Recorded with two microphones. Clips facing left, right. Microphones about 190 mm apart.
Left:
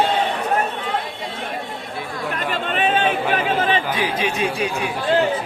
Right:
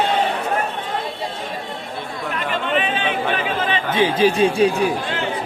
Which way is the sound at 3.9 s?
25° right (ahead or behind).